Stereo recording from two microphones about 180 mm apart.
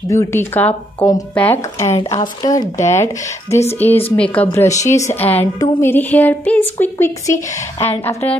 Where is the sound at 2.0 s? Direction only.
20° left (ahead or behind).